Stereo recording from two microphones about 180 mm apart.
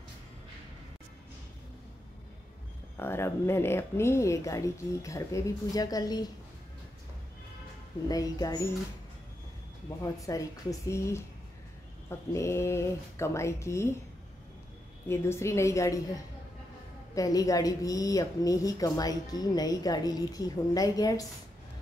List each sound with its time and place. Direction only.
3.0 s speech: 15° left (ahead or behind)
8.1 s a woman's voice: 20° left (ahead or behind)
10.2 s speech: 20° left (ahead or behind)
15.0 s speech: 15° left (ahead or behind)
17.1 s a woman's voice: 20° left (ahead or behind)